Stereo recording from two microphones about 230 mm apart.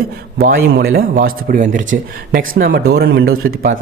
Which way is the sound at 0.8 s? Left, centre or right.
Right.